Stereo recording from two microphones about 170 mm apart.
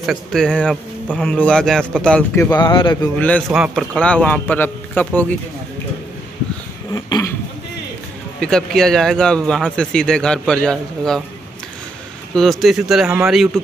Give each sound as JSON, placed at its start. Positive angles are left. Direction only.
{"t": 0.0, "sound": "a man's voice", "side_deg": 0}
{"t": 2.5, "sound": "speech", "side_deg": 30}
{"t": 3.2, "sound": "a man's voice", "side_deg": 10}
{"t": 3.5, "sound": "a man's voice", "side_deg": 0}
{"t": 6.9, "sound": "speech", "side_deg": 20}
{"t": 8.4, "sound": "a man's voice", "side_deg": 5}
{"t": 12.4, "sound": "a man's voice", "side_deg": 0}